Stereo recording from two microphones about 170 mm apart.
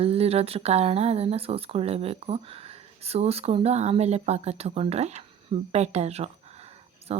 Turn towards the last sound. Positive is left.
turn(degrees=-35)  # may be behind; listen again after turning